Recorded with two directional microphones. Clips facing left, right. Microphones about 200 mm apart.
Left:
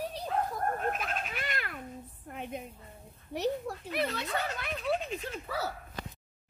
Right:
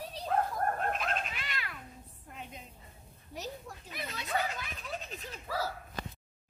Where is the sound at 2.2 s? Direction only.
55° left (ahead or behind).